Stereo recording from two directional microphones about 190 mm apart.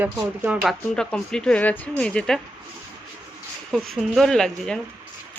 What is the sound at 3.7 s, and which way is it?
Speech, centre (ahead or behind).